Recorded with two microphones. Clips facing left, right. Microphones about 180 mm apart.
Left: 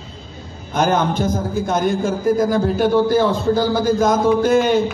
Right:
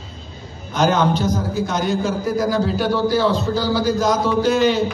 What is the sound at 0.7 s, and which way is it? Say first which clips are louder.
A man's voice: even; 50° left (ahead or behind).